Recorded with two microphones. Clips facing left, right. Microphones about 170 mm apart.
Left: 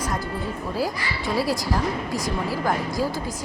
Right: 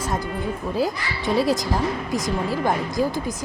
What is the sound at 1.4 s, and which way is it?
A woman's voice, 20° right (ahead or behind).